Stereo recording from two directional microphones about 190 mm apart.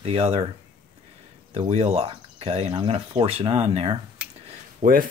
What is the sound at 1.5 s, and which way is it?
Speech, 30° right (ahead or behind).